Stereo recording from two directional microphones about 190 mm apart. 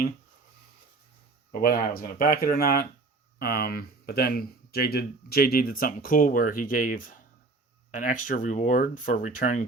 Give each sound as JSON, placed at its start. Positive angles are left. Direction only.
{"t": 1.6, "sound": "speech", "side_deg": 50}